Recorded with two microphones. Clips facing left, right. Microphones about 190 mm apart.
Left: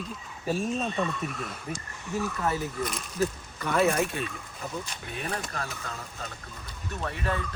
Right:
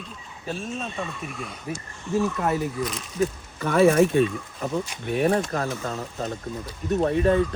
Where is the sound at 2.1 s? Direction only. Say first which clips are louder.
Right 6 dB; 20° right (ahead or behind).